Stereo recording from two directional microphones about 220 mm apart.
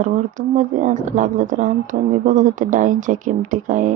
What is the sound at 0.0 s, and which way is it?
Speech, 35° right (ahead or behind).